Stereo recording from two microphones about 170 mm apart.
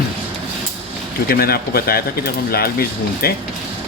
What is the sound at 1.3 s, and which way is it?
Speech, 65° left (ahead or behind).